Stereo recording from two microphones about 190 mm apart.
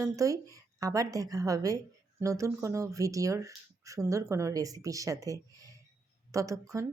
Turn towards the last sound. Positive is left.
turn(degrees=-15)  # may be behind; listen again after turning